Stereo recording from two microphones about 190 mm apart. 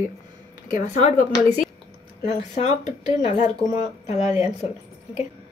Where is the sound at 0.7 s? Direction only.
40° left (ahead or behind).